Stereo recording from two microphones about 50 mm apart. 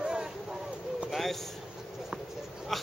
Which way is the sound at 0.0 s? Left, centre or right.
Centre.